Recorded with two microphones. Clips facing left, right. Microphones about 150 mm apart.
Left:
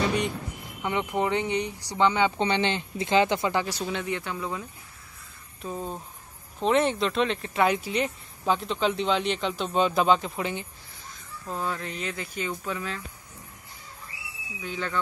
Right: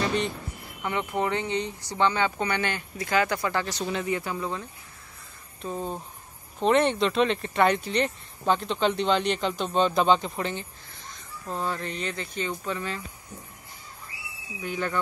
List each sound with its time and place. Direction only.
0.1 s speech: 15° left (ahead or behind)
3.8 s speech: centre (ahead or behind)
14.6 s speech: 10° right (ahead or behind)